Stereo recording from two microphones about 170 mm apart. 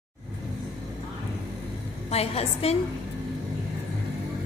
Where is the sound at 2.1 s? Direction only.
35° left (ahead or behind).